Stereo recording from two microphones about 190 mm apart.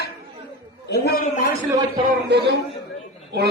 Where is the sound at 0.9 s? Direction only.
50° left (ahead or behind).